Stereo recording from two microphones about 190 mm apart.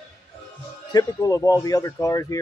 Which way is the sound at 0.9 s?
20° left (ahead or behind).